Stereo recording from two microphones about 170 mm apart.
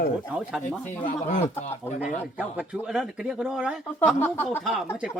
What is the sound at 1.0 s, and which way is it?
Speech, 45° left (ahead or behind).